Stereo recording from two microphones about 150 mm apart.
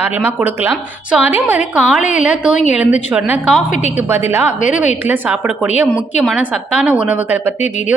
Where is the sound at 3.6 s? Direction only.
55° left (ahead or behind).